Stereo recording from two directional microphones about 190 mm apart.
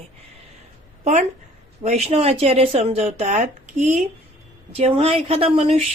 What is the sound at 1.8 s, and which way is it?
Speech, 35° right (ahead or behind).